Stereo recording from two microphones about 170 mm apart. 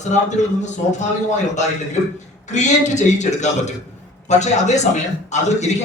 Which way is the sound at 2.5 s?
45° left (ahead or behind).